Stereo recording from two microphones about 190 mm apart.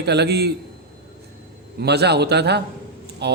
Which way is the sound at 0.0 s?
60° right (ahead or behind).